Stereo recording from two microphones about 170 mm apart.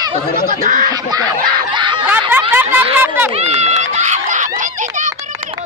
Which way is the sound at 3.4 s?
40° right (ahead or behind).